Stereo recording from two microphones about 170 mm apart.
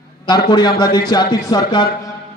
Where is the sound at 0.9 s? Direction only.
20° left (ahead or behind).